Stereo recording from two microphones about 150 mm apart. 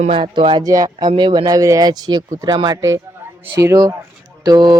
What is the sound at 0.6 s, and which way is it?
Speech, 25° right (ahead or behind).